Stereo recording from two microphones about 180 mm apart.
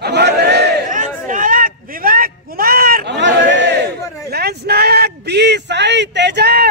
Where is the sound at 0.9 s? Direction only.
45° right (ahead or behind); by 6.6 s 65° right (ahead or behind).